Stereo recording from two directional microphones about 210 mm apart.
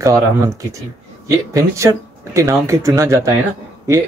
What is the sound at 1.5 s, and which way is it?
A woman's voice, 15° right (ahead or behind).